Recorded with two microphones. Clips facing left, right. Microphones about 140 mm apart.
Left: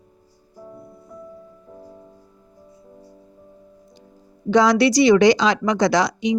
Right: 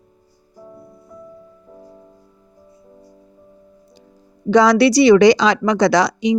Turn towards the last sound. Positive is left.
turn(degrees=-80)